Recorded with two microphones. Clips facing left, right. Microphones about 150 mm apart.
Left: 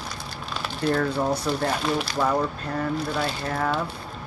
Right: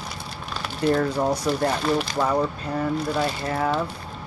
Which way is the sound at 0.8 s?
5° right (ahead or behind).